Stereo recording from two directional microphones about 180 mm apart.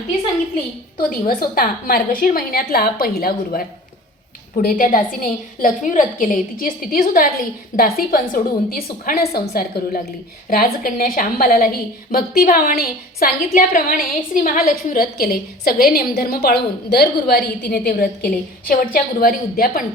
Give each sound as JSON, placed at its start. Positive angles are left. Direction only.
{"t": 0.9, "sound": "a woman's voice", "side_deg": 55}